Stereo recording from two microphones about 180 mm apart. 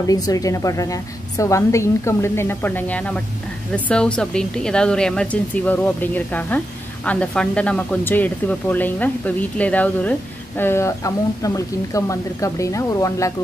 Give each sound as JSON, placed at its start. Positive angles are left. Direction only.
{"t": 0.0, "sound": "a woman's voice", "side_deg": 20}